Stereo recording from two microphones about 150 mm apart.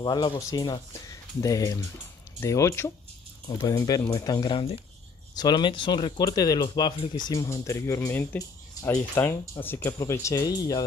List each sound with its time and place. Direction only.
0.0 s speech: 30° left (ahead or behind)